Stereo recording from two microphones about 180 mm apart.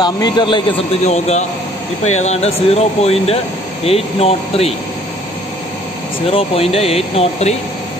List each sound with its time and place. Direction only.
0.0 s speech: 25° left (ahead or behind)
1.0 s speech: 40° left (ahead or behind)
6.2 s speech: 30° left (ahead or behind)